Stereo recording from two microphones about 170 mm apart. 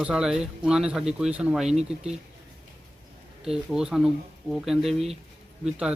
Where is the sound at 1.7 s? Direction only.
40° right (ahead or behind).